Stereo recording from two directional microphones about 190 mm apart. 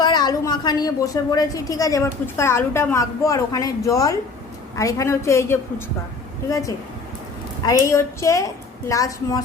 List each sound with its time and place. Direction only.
0.0 s a woman's voice: 20° left (ahead or behind)